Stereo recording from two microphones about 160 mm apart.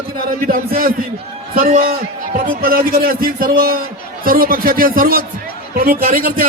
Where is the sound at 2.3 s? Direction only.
65° right (ahead or behind).